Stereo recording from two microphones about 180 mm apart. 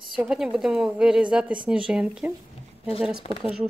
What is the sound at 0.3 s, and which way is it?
A woman's voice, 5° right (ahead or behind).